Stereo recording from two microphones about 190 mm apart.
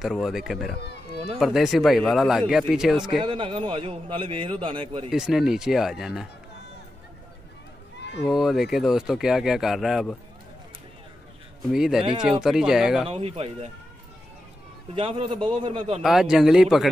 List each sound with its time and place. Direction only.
0.0 s speech: centre (ahead or behind)
3.2 s a man's voice: 25° right (ahead or behind)
5.1 s speech: centre (ahead or behind)
8.2 s speech: centre (ahead or behind)
11.7 s speech: centre (ahead or behind)
12.0 s a man's voice: 25° right (ahead or behind)
12.4 s speech: 5° right (ahead or behind)
13.1 s speech: 30° right (ahead or behind)
15.0 s a man's voice: 25° right (ahead or behind)
16.0 s speech: centre (ahead or behind)